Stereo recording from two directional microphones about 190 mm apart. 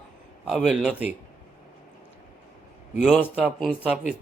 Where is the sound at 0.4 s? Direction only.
Centre (ahead or behind).